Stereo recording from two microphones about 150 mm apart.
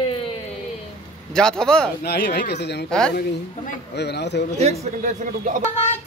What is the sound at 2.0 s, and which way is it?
Speech, 90° left.